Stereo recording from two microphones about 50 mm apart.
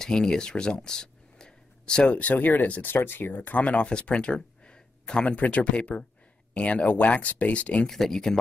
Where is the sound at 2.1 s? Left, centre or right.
Left.